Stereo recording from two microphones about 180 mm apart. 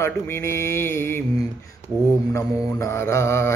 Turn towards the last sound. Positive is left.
turn(degrees=15)  # may be behind; listen again after turning